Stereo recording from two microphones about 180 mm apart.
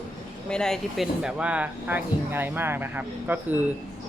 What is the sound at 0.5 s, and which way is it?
Speech, 5° left (ahead or behind).